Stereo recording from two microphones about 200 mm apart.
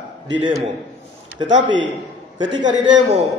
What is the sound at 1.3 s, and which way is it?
Speech, 20° right (ahead or behind).